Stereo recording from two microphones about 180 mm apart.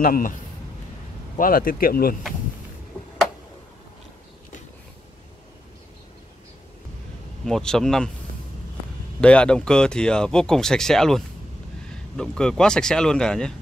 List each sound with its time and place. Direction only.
0.0 s speech: 50° left (ahead or behind)
1.4 s speech: 50° left (ahead or behind)
7.4 s speech: 5° left (ahead or behind)
9.2 s speech: 5° left (ahead or behind)